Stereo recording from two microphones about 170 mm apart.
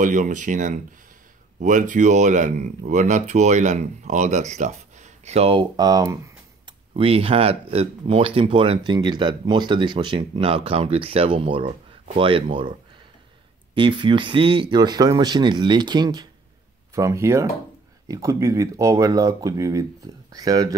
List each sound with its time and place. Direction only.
0.0 s speech: 50° right (ahead or behind); by 6.1 s 20° right (ahead or behind)
6.6 s speech: 35° right (ahead or behind)
13.7 s speech: 30° right (ahead or behind)